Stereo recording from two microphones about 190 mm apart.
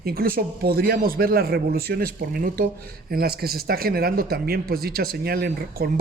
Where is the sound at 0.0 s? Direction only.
50° right (ahead or behind).